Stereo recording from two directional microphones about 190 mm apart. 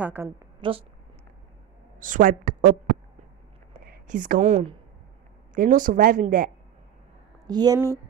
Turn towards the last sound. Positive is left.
turn(degrees=-20)  # may be behind; listen again after turning